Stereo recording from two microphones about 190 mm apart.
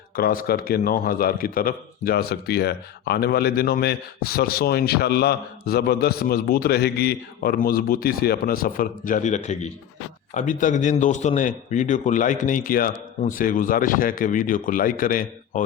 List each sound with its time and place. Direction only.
0.2 s a man's voice: 50° left (ahead or behind)